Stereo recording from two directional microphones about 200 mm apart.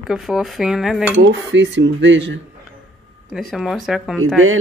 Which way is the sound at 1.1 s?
65° right (ahead or behind).